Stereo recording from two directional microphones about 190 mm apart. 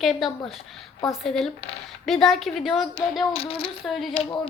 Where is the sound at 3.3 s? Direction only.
30° left (ahead or behind).